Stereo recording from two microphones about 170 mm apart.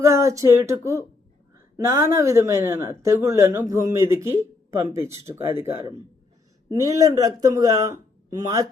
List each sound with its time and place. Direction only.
0.0 s speech: 15° right (ahead or behind)
1.5 s a sound: 15° right (ahead or behind)
2.1 s speech: 20° right (ahead or behind)